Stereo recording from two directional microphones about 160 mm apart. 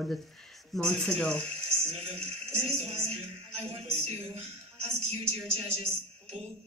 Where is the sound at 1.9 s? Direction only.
40° right (ahead or behind).